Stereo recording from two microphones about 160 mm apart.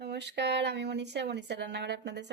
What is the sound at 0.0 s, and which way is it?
Speech, 90° right.